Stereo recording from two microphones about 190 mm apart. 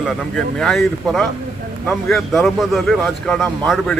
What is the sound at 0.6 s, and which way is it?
Speech, centre (ahead or behind).